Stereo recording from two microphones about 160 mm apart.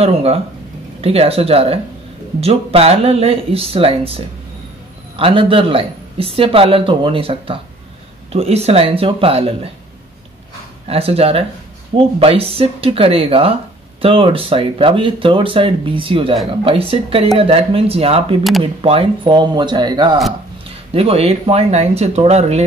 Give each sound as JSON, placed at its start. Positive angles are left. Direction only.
{"t": 0.0, "sound": "speech", "side_deg": -40}
{"t": 5.1, "sound": "speech", "side_deg": -35}
{"t": 10.9, "sound": "speech", "side_deg": -40}
{"t": 20.9, "sound": "speech", "side_deg": -40}